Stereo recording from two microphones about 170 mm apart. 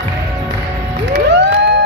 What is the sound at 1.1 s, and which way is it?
Cheering, 90° right.